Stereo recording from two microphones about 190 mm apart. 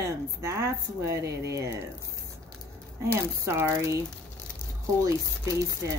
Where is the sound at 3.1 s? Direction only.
15° right (ahead or behind).